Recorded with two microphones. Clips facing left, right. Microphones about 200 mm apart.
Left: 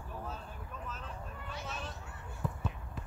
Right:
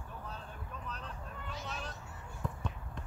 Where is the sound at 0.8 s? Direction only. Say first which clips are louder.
Even; 5° left (ahead or behind).